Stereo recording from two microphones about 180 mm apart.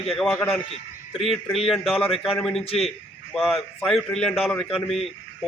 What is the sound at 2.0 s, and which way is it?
Speech, 30° left (ahead or behind).